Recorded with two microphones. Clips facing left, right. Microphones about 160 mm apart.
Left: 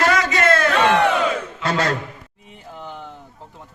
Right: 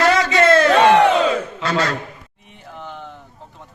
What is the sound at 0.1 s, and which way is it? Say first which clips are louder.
Crowd: right 4 dB; 30° right (ahead or behind).